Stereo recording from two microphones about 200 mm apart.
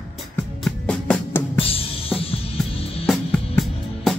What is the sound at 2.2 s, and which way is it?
Music, 30° left (ahead or behind).